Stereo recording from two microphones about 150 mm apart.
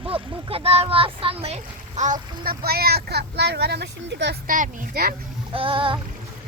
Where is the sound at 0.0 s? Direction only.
35° right (ahead or behind); by 3.8 s 90° right.